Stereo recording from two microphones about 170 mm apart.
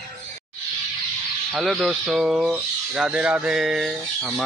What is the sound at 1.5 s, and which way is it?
Speech, centre (ahead or behind).